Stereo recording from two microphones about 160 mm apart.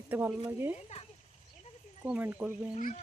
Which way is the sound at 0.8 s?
45° left (ahead or behind).